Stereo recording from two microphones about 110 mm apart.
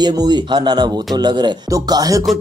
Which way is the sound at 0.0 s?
40° right (ahead or behind).